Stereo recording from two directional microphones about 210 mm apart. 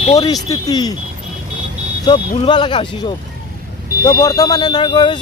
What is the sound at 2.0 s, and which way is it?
Speech, 20° left (ahead or behind).